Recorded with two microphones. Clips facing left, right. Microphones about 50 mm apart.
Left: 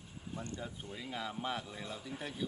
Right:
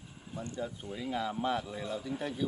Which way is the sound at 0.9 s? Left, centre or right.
Centre.